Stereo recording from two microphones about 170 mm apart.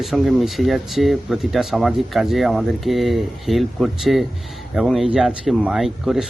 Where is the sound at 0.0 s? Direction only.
Centre (ahead or behind).